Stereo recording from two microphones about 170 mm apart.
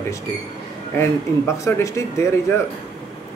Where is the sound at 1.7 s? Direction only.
15° left (ahead or behind).